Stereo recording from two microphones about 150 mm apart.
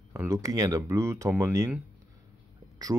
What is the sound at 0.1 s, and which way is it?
Speech, 20° right (ahead or behind).